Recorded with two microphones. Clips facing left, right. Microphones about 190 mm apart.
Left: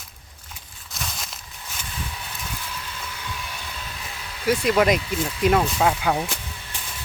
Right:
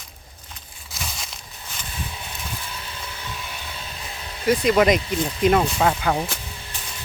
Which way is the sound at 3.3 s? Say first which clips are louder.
Even; 25° right (ahead or behind).